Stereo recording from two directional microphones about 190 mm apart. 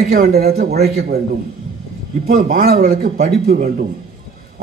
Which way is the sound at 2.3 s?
50° right (ahead or behind).